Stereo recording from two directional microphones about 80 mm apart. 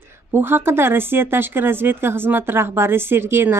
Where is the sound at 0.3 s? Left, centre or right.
Right.